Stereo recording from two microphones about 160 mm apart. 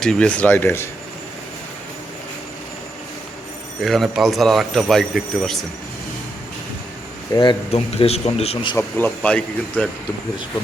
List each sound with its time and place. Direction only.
0.0 s speech: 5° left (ahead or behind)
3.8 s a man's voice: centre (ahead or behind)
7.3 s speech: 25° left (ahead or behind)
7.7 s a man's voice: 40° left (ahead or behind)
8.8 s speech: 10° left (ahead or behind)